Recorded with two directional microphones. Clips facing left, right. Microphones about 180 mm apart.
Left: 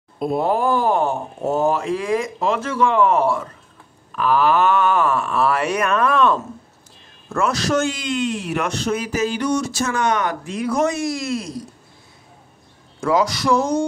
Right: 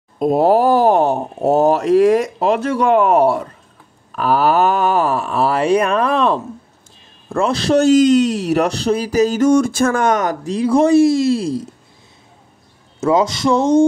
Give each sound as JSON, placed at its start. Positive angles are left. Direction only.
{"t": 0.2, "sound": "speech", "side_deg": -40}
{"t": 13.0, "sound": "speech", "side_deg": -25}